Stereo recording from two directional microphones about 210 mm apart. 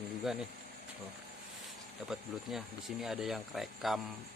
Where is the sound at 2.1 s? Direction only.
Centre (ahead or behind).